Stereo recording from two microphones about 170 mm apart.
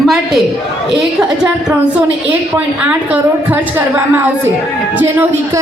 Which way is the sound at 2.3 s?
10° right (ahead or behind).